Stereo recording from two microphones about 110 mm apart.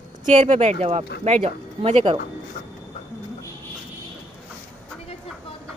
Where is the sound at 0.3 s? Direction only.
90° right; by 2.1 s 70° right (ahead or behind).